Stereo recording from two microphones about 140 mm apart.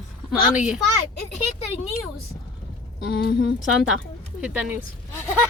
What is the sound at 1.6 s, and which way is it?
Speech, 50° left (ahead or behind).